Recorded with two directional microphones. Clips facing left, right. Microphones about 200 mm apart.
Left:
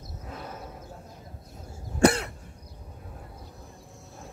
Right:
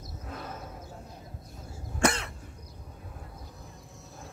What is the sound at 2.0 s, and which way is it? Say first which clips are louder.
Cough: left 6 dB; 35° left (ahead or behind).